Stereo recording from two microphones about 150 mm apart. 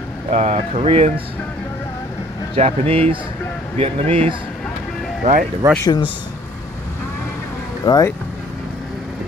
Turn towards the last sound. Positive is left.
turn(degrees=30)  # may be behind; listen again after turning